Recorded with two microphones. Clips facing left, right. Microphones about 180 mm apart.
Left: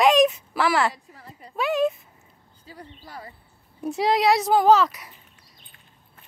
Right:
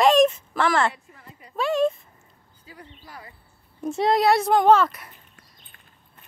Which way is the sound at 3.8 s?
Centre (ahead or behind).